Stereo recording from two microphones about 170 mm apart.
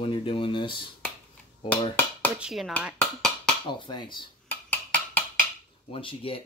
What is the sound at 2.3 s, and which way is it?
Speech, 5° right (ahead or behind).